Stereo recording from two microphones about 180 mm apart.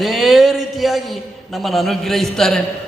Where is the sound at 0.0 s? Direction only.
Centre (ahead or behind).